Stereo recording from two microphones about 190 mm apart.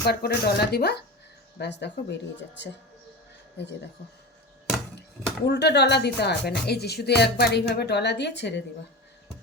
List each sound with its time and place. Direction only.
0.0 s speech: 60° left (ahead or behind)
3.6 s speech: 60° left (ahead or behind)
5.5 s speech: 60° left (ahead or behind)